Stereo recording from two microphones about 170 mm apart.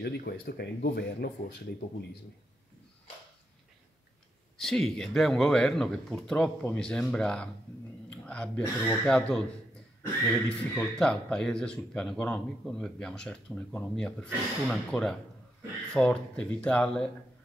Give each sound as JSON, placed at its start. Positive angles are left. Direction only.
{"t": 0.0, "sound": "speech", "side_deg": 70}
{"t": 4.6, "sound": "speech", "side_deg": 0}